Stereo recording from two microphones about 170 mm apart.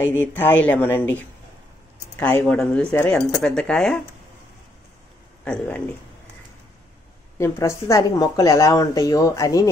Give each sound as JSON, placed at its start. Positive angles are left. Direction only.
{"t": 0.0, "sound": "speech", "side_deg": 15}
{"t": 2.1, "sound": "speech", "side_deg": 15}
{"t": 5.4, "sound": "speech", "side_deg": 10}
{"t": 7.3, "sound": "speech", "side_deg": 15}